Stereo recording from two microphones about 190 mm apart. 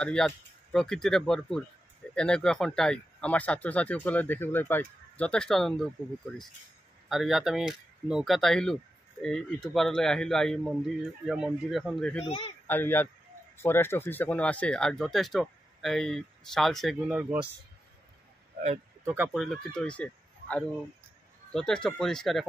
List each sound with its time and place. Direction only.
0.0 s speech: 5° left (ahead or behind)
7.1 s speech: centre (ahead or behind)
12.3 s speech: 25° left (ahead or behind)
12.6 s speech: 10° left (ahead or behind); by 17.5 s 10° right (ahead or behind)
19.0 s speech: 10° right (ahead or behind)